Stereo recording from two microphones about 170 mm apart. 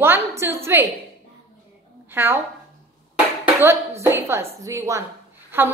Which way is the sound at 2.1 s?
15° right (ahead or behind).